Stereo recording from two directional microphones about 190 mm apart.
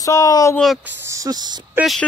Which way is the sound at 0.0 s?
15° left (ahead or behind).